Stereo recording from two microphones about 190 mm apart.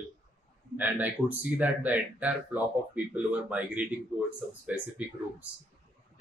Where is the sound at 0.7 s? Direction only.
10° right (ahead or behind).